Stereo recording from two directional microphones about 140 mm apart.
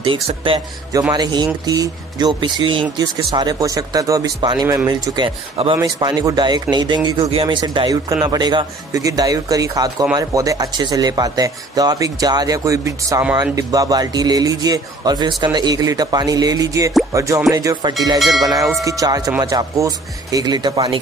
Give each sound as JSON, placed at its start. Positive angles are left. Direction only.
{"t": 0.0, "sound": "speech", "side_deg": -40}
{"t": 18.2, "sound": "music", "side_deg": 0}
{"t": 18.9, "sound": "speech", "side_deg": -25}